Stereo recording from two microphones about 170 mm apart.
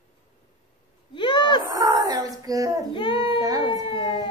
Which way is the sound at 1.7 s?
20° right (ahead or behind).